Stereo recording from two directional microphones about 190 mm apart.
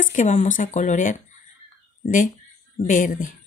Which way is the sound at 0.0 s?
40° left (ahead or behind).